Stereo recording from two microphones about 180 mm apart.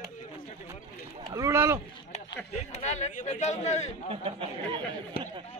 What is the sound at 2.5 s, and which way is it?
A man's voice, 40° left (ahead or behind).